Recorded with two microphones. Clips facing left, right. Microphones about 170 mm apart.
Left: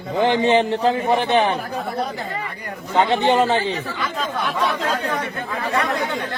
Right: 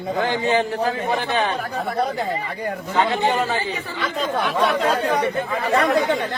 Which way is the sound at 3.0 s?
25° left (ahead or behind).